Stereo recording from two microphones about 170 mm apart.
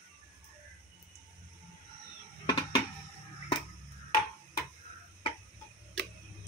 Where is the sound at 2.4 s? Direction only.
25° left (ahead or behind).